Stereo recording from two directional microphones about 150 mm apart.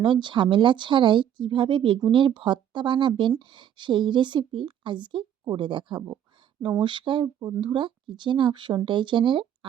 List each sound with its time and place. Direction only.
0.0 s speech: 30° right (ahead or behind)